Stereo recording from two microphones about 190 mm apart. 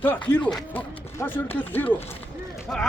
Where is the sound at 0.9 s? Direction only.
30° left (ahead or behind).